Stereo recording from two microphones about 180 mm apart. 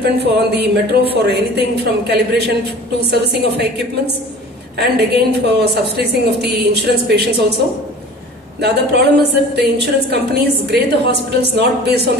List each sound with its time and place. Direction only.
0.0 s a woman's voice: 70° right (ahead or behind)
8.5 s a woman's voice: 65° right (ahead or behind)